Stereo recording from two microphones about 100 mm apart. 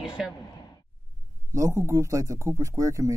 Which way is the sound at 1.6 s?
30° right (ahead or behind).